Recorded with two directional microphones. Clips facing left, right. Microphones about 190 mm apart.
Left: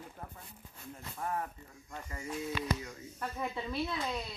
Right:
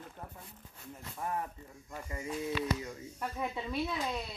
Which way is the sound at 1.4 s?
15° right (ahead or behind).